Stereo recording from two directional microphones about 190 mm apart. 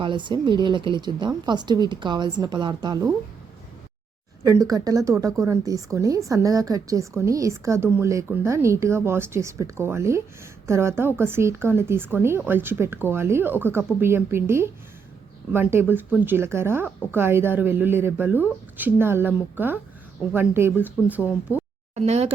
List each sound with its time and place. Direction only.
0.0 s a woman's voice: 25° right (ahead or behind)
4.4 s speech: 20° right (ahead or behind)
21.9 s speech: 35° right (ahead or behind)